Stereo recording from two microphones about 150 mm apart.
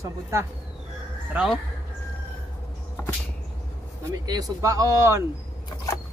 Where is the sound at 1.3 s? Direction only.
10° right (ahead or behind).